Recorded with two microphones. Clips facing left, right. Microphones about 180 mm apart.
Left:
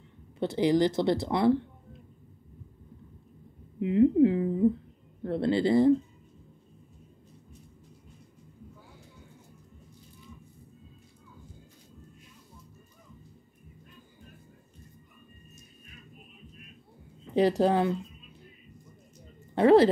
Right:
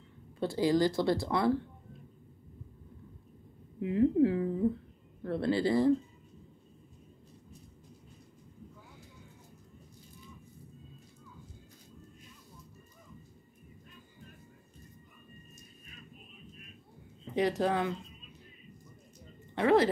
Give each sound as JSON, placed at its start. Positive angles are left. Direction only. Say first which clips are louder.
{"t": 0.4, "sound": "speech", "louder": "left 3 dB", "side_deg": 20}
{"t": 3.8, "sound": "speech", "louder": "left 5 dB", "side_deg": 20}
{"t": 17.4, "sound": "speech", "louder": "left 6 dB", "side_deg": 30}
{"t": 19.5, "sound": "speech", "louder": "left 6 dB", "side_deg": 30}